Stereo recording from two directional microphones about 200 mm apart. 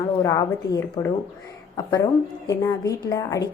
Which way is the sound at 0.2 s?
15° left (ahead or behind).